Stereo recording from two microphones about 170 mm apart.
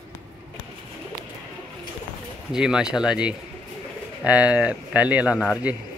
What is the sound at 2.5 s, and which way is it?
Speech, 5° right (ahead or behind).